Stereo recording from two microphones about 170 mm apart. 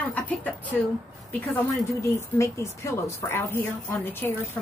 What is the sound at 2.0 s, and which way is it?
Speech, 15° left (ahead or behind).